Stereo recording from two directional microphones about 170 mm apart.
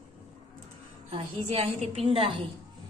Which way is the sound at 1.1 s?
35° right (ahead or behind).